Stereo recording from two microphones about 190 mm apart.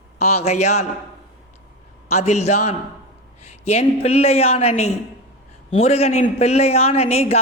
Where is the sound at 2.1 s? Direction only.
35° left (ahead or behind).